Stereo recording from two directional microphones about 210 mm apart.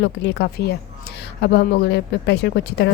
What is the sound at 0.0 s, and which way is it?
Speech, 55° left (ahead or behind).